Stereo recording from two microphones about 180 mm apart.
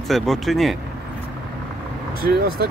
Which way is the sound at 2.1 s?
60° right (ahead or behind).